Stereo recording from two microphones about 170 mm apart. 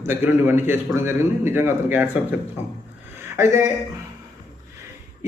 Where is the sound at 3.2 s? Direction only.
15° right (ahead or behind).